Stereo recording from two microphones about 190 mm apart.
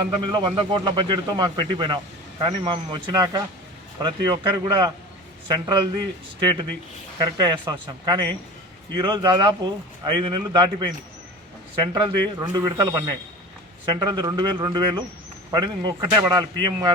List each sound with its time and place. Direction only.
0.0 s a man's voice: 25° right (ahead or behind)